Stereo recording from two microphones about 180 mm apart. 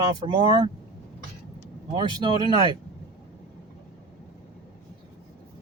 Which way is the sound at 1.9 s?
25° right (ahead or behind).